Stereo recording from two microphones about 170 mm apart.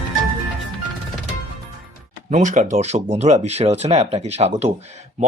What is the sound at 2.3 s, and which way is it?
Speech, 45° right (ahead or behind).